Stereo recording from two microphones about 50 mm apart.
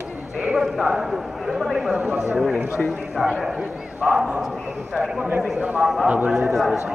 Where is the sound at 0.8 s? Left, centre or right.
Centre.